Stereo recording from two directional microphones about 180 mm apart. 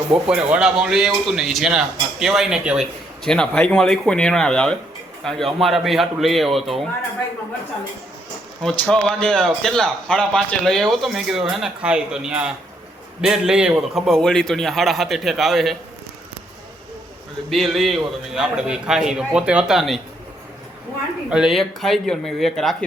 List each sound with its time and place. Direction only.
0.1 s a man's voice: 5° right (ahead or behind)
8.9 s a man's voice: 5° left (ahead or behind)
17.5 s a man's voice: centre (ahead or behind)
21.2 s a man's voice: 5° right (ahead or behind)